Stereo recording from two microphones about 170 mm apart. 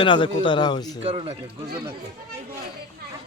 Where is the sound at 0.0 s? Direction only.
30° left (ahead or behind).